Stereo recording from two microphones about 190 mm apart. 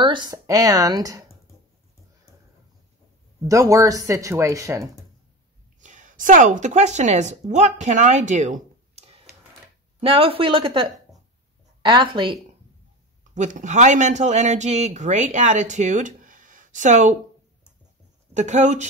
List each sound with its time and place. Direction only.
0.0 s speech: 25° right (ahead or behind)
3.4 s speech: 15° right (ahead or behind)
5.8 s a woman's voice: 40° right (ahead or behind); by 12.4 s 25° right (ahead or behind)
13.3 s speech: 40° right (ahead or behind)
18.3 s speech: 40° right (ahead or behind)